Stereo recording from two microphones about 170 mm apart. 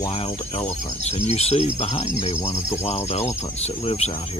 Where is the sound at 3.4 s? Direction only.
40° left (ahead or behind).